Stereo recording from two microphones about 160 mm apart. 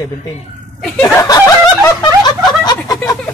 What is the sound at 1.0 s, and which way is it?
Speech, 25° left (ahead or behind).